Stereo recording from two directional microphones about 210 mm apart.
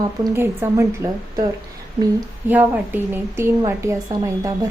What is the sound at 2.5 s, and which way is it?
A woman's voice, 10° right (ahead or behind).